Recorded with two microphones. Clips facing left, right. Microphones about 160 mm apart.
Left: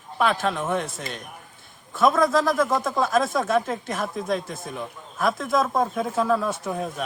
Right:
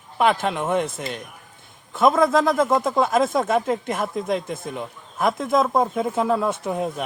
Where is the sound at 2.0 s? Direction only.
20° right (ahead or behind).